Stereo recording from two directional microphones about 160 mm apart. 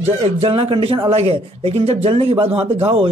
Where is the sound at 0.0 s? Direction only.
40° right (ahead or behind).